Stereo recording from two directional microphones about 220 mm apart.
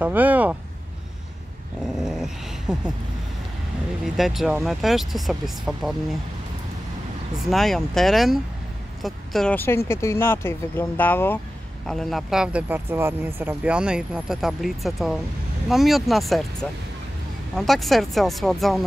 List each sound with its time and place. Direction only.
0.0 s speech: 5° right (ahead or behind)
2.0 s dog: centre (ahead or behind)
4.0 s speech: centre (ahead or behind)
7.3 s a woman's voice: centre (ahead or behind)
17.6 s speech: centre (ahead or behind)